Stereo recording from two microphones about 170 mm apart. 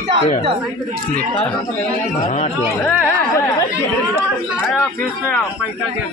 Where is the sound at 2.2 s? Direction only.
40° left (ahead or behind).